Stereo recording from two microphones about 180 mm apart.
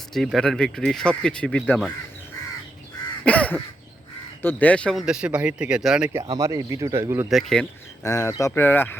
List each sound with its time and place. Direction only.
0.1 s speech: centre (ahead or behind)
3.2 s crow: 5° left (ahead or behind)
4.4 s speech: 10° left (ahead or behind)
6.3 s speech: 20° right (ahead or behind)
7.3 s speech: centre (ahead or behind)
8.0 s speech: 15° left (ahead or behind)